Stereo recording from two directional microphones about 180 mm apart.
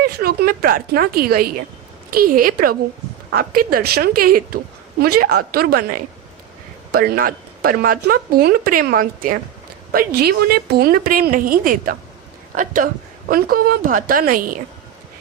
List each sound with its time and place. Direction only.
0.0 s a woman's voice: 55° right (ahead or behind)